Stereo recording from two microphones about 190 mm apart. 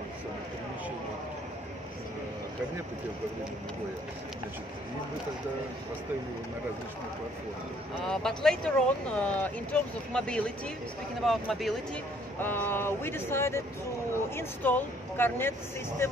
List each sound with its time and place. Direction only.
8.1 s speech: 5° left (ahead or behind)
12.4 s speech: 10° left (ahead or behind)